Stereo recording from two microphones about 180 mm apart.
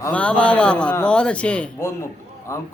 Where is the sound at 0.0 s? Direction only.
5° left (ahead or behind).